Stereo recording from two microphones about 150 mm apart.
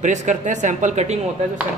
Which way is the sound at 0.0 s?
55° right (ahead or behind).